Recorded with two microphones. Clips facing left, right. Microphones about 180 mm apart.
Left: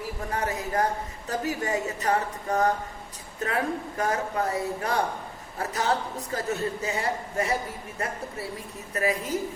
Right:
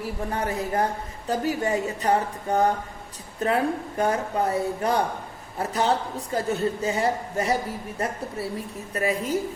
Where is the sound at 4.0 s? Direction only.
30° right (ahead or behind).